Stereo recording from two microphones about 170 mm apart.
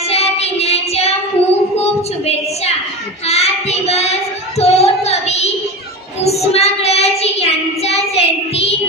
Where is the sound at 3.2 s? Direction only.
40° left (ahead or behind).